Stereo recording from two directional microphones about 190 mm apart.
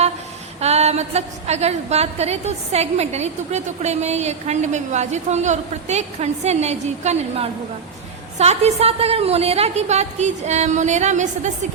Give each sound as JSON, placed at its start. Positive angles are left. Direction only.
{"t": 0.6, "sound": "a woman's voice", "side_deg": -35}